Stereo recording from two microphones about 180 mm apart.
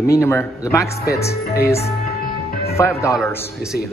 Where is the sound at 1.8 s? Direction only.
60° left (ahead or behind).